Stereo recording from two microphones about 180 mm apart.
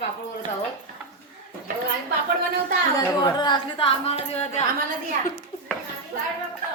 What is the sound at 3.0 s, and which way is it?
Speech, 25° left (ahead or behind).